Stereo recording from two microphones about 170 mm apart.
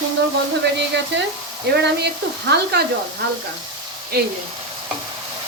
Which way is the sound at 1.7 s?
75° right (ahead or behind).